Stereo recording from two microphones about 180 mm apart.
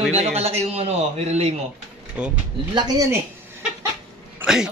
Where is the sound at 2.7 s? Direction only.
20° right (ahead or behind).